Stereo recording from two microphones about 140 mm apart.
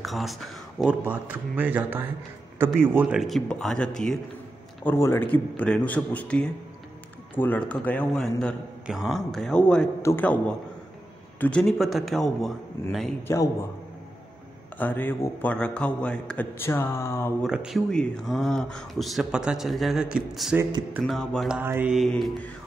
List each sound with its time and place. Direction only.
0.0 s speech: centre (ahead or behind)
1.0 s speech: 15° right (ahead or behind); by 4.2 s 5° left (ahead or behind)
4.8 s a man's voice: 15° left (ahead or behind)
11.6 s speech: centre (ahead or behind)
12.8 s a man's voice: 20° left (ahead or behind)
14.8 s a man's voice: 10° left (ahead or behind)
17.4 s speech: 5° right (ahead or behind)
21.0 s speech: 5° left (ahead or behind)
21.5 s speech: 15° right (ahead or behind)
21.9 s speech: centre (ahead or behind)